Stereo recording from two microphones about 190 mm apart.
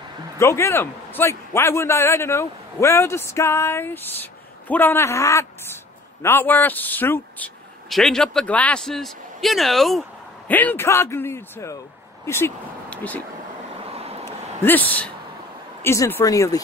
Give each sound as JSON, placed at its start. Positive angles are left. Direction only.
{"t": 0.4, "sound": "a man's voice", "side_deg": 15}
{"t": 13.8, "sound": "vehicle", "side_deg": -30}
{"t": 14.6, "sound": "a man's voice", "side_deg": 10}